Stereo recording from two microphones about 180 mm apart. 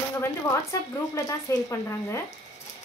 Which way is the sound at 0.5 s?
15° left (ahead or behind).